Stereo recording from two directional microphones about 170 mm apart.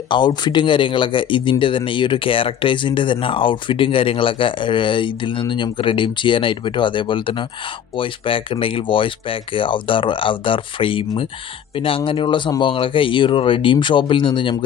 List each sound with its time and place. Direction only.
0.1 s speech: 25° left (ahead or behind)